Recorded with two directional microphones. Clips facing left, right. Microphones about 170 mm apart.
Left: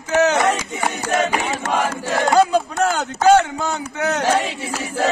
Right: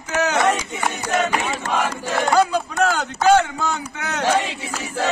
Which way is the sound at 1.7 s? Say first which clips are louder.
Left 2 dB; 15° left (ahead or behind).